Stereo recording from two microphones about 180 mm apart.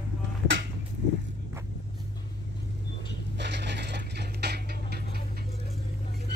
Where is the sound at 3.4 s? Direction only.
70° right (ahead or behind).